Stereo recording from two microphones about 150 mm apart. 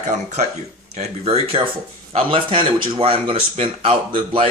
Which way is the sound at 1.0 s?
40° right (ahead or behind).